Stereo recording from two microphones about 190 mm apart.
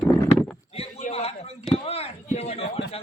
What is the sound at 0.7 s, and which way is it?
A man's voice, 35° left (ahead or behind).